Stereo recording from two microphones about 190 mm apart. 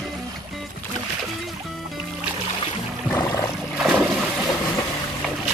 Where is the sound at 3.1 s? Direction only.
10° left (ahead or behind).